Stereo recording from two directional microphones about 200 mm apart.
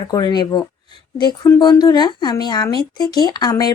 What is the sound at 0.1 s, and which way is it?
Speech, 20° left (ahead or behind).